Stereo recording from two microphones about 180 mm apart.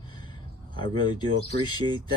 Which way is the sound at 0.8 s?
25° left (ahead or behind).